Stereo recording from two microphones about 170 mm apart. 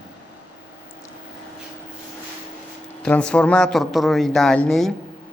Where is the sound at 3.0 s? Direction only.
5° left (ahead or behind).